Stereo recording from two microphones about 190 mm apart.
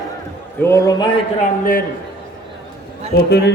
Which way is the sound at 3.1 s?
65° left (ahead or behind).